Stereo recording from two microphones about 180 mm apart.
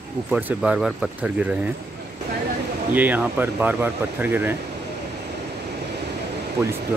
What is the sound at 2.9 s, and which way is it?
Speech, 10° right (ahead or behind).